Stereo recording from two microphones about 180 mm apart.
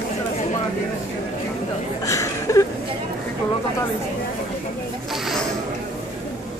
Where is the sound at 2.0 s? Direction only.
20° left (ahead or behind).